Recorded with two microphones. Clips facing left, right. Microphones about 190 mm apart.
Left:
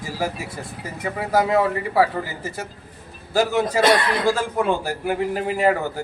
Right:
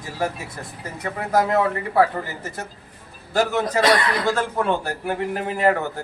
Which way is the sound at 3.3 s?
5° left (ahead or behind).